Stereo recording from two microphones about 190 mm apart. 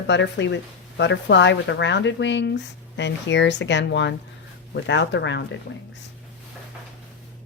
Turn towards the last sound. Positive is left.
turn(degrees=70)  # may be behind; listen again after turning